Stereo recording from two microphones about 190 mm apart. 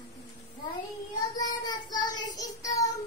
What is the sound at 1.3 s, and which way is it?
Child singing, 20° left (ahead or behind).